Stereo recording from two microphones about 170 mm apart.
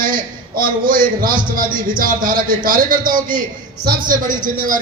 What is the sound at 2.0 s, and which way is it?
A man's voice, 55° right (ahead or behind).